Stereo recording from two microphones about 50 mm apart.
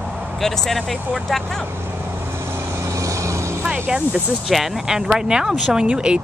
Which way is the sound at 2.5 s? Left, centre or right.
Right.